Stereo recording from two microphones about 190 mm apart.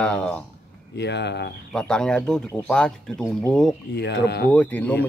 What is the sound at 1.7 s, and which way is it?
Speech, 5° left (ahead or behind).